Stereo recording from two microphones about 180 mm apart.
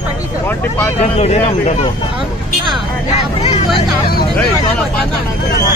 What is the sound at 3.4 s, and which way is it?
Speech, 40° left (ahead or behind).